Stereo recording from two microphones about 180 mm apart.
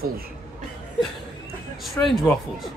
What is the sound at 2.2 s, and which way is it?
Speech, 5° left (ahead or behind).